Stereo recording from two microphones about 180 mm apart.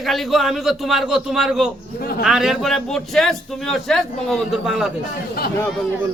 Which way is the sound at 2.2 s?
Centre (ahead or behind).